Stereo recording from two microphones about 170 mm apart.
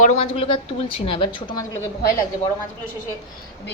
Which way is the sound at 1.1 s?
25° left (ahead or behind).